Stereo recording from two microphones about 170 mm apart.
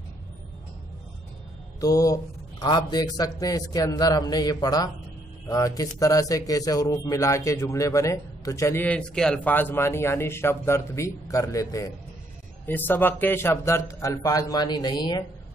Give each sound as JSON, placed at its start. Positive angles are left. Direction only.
{"t": 1.8, "sound": "a man's voice", "side_deg": 20}